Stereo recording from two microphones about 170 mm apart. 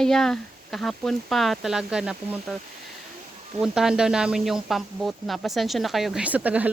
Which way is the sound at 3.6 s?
5° right (ahead or behind).